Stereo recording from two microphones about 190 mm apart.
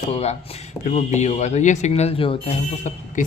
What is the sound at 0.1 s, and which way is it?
Speech, 35° left (ahead or behind).